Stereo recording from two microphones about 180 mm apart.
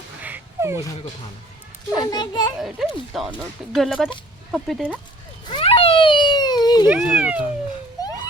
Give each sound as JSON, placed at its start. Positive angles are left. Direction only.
{"t": 0.2, "sound": "dog", "side_deg": -10}
{"t": 2.0, "sound": "a child's voice", "side_deg": 25}
{"t": 2.6, "sound": "speech", "side_deg": 0}
{"t": 5.5, "sound": "a sound", "side_deg": 30}
{"t": 6.8, "sound": "speech", "side_deg": -10}